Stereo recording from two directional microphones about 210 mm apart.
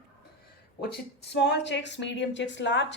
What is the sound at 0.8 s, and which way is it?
A woman's voice, 50° left (ahead or behind).